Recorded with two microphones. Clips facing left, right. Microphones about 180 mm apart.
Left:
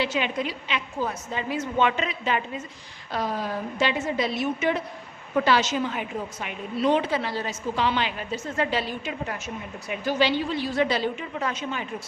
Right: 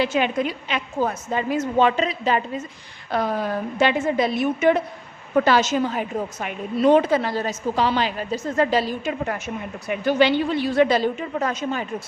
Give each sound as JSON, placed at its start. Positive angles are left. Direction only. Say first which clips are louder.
{"t": 0.0, "sound": "a woman's voice", "louder": "right 5 dB", "side_deg": -50}
{"t": 3.1, "sound": "a woman's voice", "louder": "right 5 dB", "side_deg": -60}